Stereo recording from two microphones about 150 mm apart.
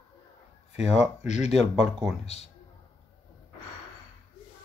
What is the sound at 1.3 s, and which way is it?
Speech, 45° left (ahead or behind).